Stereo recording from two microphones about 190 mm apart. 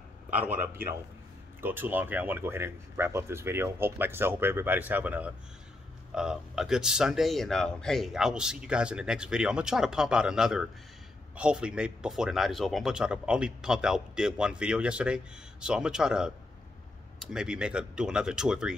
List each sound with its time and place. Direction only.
0.3 s speech: 10° right (ahead or behind)